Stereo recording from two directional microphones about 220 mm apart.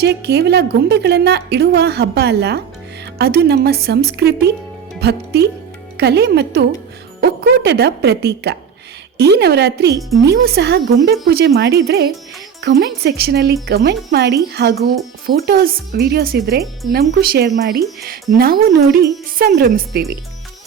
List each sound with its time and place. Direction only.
0.0 s a woman's voice: 50° right (ahead or behind)